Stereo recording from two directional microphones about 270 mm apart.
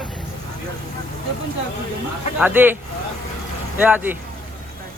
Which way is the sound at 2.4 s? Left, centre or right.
Centre.